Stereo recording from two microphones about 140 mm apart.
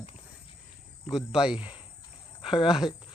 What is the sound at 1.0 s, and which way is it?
Speech, 5° right (ahead or behind).